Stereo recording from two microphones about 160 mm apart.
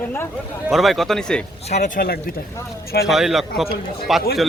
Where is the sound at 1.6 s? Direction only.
45° left (ahead or behind).